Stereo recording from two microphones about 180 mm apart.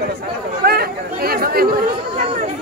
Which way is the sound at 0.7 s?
55° right (ahead or behind).